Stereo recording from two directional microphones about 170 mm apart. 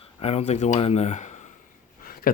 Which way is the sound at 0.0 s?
35° left (ahead or behind).